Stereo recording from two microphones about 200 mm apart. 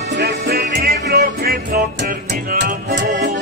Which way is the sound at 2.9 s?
60° right (ahead or behind).